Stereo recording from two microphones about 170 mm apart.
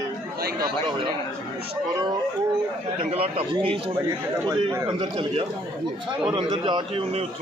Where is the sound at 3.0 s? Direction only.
35° right (ahead or behind).